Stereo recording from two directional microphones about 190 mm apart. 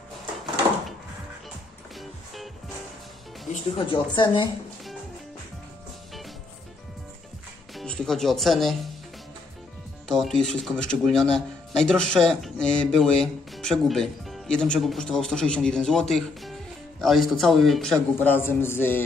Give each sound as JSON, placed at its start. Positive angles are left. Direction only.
{"t": 2.0, "sound": "music", "side_deg": 0}
{"t": 3.7, "sound": "speech", "side_deg": 25}
{"t": 7.7, "sound": "speech", "side_deg": 5}
{"t": 10.0, "sound": "speech", "side_deg": 0}